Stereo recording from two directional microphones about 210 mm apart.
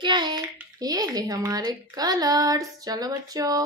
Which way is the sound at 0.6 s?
20° right (ahead or behind).